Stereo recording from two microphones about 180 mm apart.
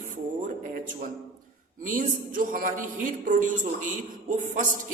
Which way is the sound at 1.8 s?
50° right (ahead or behind).